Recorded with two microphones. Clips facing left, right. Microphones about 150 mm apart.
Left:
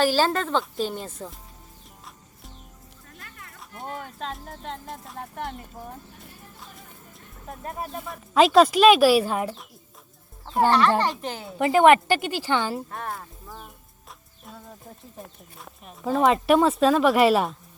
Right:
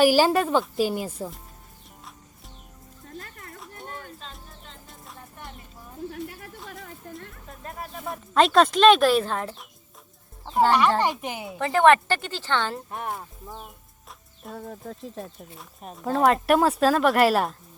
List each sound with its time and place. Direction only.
0.0 s speech: 10° right (ahead or behind)
3.1 s music: 40° right (ahead or behind)
4.2 s music: 90° left
5.1 s a sound: 75° left (ahead or behind)
6.2 s speech: 80° right
8.1 s speech: centre (ahead or behind)
10.7 s speech: 15° right (ahead or behind)
11.6 s speech: 15° left (ahead or behind)
12.9 s speech: 20° right (ahead or behind)
14.4 s speech: 50° right (ahead or behind)
14.8 s speech: 90° right
16.0 s speech: centre (ahead or behind)